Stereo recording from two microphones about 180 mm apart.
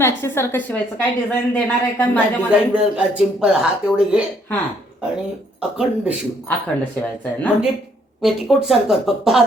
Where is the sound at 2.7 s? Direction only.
5° right (ahead or behind).